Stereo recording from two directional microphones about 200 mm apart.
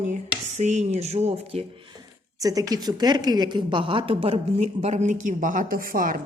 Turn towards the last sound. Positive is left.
turn(degrees=-45)  # may be behind; listen again after turning